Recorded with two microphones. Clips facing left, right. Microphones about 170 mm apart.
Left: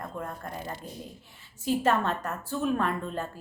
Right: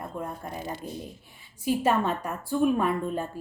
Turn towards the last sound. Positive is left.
turn(degrees=-10)  # may be behind; listen again after turning